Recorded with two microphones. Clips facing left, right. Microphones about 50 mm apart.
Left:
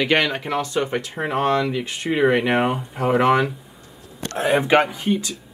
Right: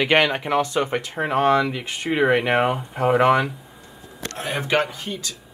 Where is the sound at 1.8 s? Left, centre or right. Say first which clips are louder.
Left 1 dB; right.